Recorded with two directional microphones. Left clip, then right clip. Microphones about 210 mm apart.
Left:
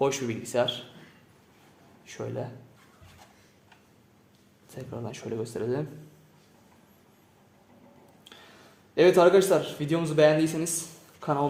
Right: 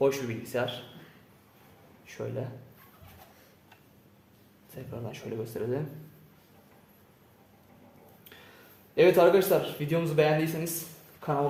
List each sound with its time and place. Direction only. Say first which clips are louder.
0.0 s speech: even; 40° left (ahead or behind)
2.0 s speech: left 1 dB; 35° left (ahead or behind)
4.7 s speech: left 2 dB; 35° left (ahead or behind)
9.0 s speech: left 2 dB; 35° left (ahead or behind)